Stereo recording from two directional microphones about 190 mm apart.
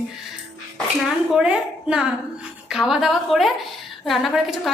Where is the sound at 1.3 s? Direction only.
5° right (ahead or behind).